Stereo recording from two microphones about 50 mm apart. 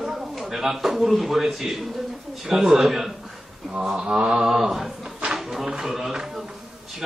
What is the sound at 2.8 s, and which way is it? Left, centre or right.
Speech, centre.